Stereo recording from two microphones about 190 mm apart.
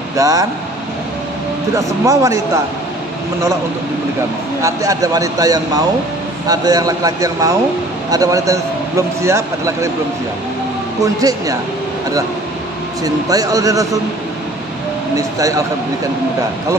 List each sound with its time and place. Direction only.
0.1 s speech: 15° right (ahead or behind)
1.8 s speech: 15° right (ahead or behind)
4.6 s speech: 15° right (ahead or behind)
11.0 s speech: 20° right (ahead or behind)
13.0 s speech: 20° right (ahead or behind)
15.1 s speech: 15° right (ahead or behind)